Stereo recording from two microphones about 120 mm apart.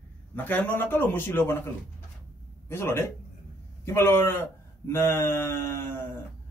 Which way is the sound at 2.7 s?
20° left (ahead or behind).